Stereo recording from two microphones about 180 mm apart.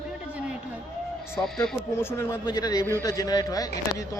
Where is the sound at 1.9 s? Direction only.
15° left (ahead or behind).